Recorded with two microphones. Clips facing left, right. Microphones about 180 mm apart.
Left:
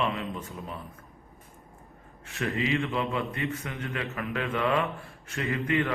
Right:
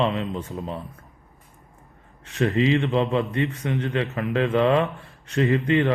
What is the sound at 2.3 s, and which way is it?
Speech, 35° right (ahead or behind).